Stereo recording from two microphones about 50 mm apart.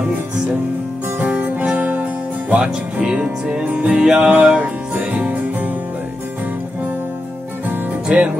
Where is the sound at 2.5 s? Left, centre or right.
Centre.